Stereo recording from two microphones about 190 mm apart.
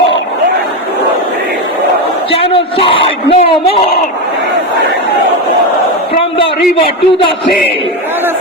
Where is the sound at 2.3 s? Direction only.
30° left (ahead or behind).